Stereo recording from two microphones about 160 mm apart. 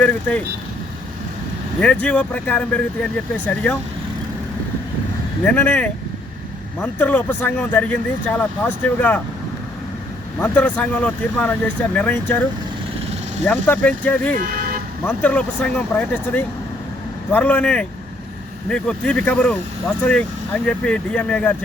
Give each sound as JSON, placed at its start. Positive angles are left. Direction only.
{"t": 0.0, "sound": "speech", "side_deg": 10}
{"t": 1.8, "sound": "speech", "side_deg": 5}
{"t": 5.4, "sound": "speech", "side_deg": 10}
{"t": 10.4, "sound": "speech", "side_deg": 10}
{"t": 13.4, "sound": "speech", "side_deg": 10}
{"t": 14.4, "sound": "speech", "side_deg": -65}
{"t": 15.0, "sound": "speech", "side_deg": 10}